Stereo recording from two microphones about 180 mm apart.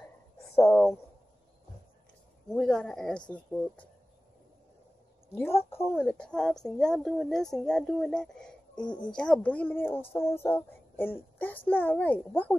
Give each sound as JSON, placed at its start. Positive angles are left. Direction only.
{"t": 0.6, "sound": "a sound", "side_deg": 15}
{"t": 2.5, "sound": "a woman's voice", "side_deg": 0}
{"t": 5.7, "sound": "a woman's voice", "side_deg": 15}